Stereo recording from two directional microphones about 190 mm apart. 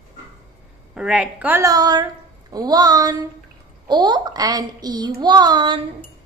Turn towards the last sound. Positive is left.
turn(degrees=-25)  # may be behind; listen again after turning